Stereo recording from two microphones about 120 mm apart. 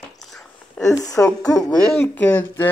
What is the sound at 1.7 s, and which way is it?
Speech, 5° left (ahead or behind).